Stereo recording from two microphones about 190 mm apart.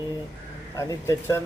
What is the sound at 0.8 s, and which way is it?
Speech, 15° left (ahead or behind).